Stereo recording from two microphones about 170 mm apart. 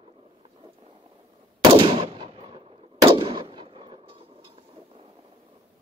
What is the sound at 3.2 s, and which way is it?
Artillery fire, 30° right (ahead or behind).